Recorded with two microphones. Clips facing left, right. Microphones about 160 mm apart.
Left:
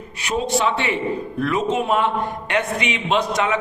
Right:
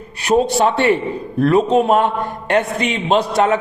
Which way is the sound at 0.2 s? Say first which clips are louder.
Right 7 dB; 35° right (ahead or behind).